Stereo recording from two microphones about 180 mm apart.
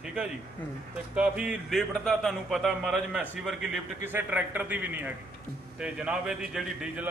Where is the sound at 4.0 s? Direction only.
10° right (ahead or behind).